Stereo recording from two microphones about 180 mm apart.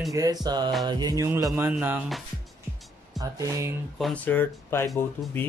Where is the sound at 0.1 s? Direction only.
20° right (ahead or behind).